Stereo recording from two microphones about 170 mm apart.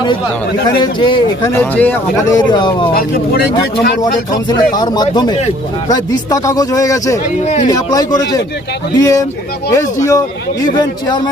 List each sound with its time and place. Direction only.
0.8 s a man's voice: 25° left (ahead or behind)
1.7 s speech: 10° left (ahead or behind)
2.3 s a man's voice: 25° left (ahead or behind)
4.4 s a man's voice: 25° left (ahead or behind)
7.4 s speech: 40° left (ahead or behind)
7.7 s a man's voice: 20° left (ahead or behind)